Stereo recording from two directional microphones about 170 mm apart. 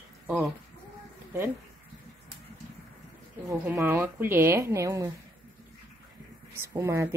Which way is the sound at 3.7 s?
10° right (ahead or behind).